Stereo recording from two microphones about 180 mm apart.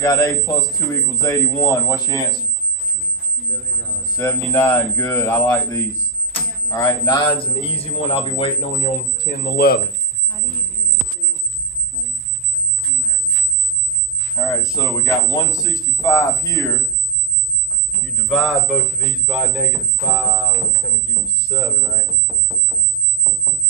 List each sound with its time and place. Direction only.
0.0 s a man's voice: 15° left (ahead or behind)
4.2 s a man's voice: 15° left (ahead or behind); by 9.0 s 35° left (ahead or behind)
9.2 s speech: 60° left (ahead or behind)
14.3 s a man's voice: 20° left (ahead or behind)
18.3 s a man's voice: centre (ahead or behind)
21.5 s a man's voice: 5° right (ahead or behind)